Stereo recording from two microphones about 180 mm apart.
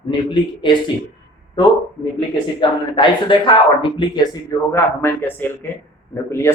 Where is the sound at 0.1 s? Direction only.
25° left (ahead or behind).